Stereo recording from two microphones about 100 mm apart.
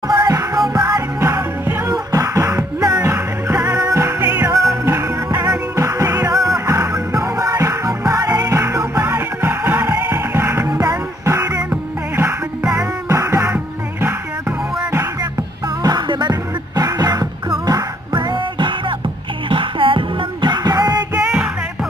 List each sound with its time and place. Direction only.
0.2 s music: 35° right (ahead or behind); by 4.6 s 20° right (ahead or behind)
4.6 s music: 30° right (ahead or behind)
9.0 s music: 20° right (ahead or behind)
13.1 s music: 30° right (ahead or behind)
15.8 s music: 45° right (ahead or behind)
21.2 s music: 5° right (ahead or behind)